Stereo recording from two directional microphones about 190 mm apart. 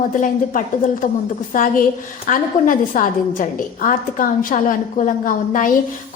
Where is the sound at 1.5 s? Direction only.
45° left (ahead or behind).